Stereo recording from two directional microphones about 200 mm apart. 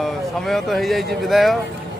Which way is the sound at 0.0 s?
Centre (ahead or behind).